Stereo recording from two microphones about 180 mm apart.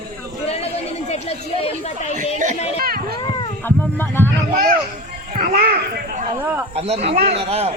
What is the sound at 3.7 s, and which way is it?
Speech, 10° left (ahead or behind).